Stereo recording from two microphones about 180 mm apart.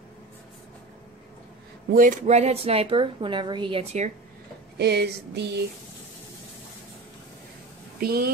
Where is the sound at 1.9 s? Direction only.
45° right (ahead or behind).